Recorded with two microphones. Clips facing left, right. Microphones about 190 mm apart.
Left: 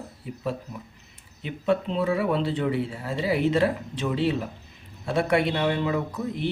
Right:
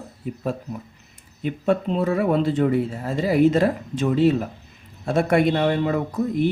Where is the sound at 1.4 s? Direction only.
45° right (ahead or behind).